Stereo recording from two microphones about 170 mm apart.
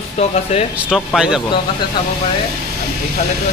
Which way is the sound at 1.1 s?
5° right (ahead or behind).